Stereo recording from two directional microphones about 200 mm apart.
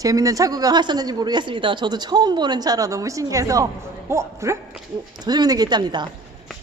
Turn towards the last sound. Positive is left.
turn(degrees=-20)  # may be behind; listen again after turning